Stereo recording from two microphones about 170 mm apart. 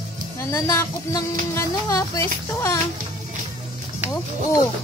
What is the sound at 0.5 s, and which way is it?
Speech, 15° left (ahead or behind).